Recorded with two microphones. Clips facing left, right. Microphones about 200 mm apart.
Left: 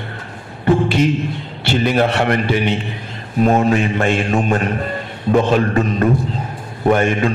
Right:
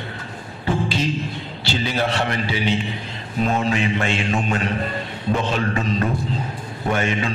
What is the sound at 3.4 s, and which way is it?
Mantra, 50° left (ahead or behind).